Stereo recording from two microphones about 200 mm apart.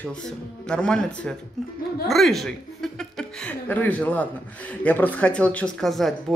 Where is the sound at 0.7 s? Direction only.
5° left (ahead or behind).